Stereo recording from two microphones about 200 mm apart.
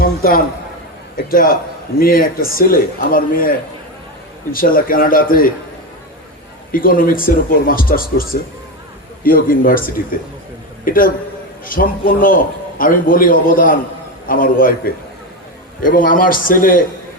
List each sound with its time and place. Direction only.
0.0 s a man's voice: 45° left (ahead or behind)
6.7 s speech: 45° left (ahead or behind)